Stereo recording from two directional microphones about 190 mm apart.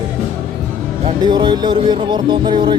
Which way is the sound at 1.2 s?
25° right (ahead or behind).